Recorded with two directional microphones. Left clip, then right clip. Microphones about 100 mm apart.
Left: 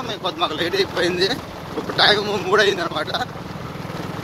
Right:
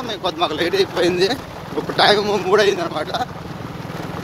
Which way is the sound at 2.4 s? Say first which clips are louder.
Even; 20° right (ahead or behind).